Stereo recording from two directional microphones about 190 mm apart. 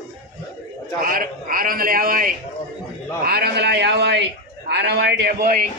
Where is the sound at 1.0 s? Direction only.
50° right (ahead or behind).